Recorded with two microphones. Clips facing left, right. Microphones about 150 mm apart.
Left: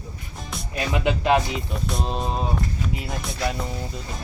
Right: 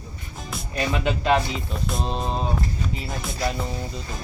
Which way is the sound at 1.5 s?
Centre (ahead or behind).